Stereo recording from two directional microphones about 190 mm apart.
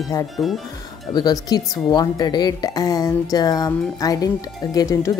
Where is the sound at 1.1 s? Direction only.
20° left (ahead or behind).